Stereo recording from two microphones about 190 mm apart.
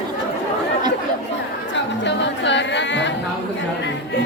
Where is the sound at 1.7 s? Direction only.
70° left (ahead or behind).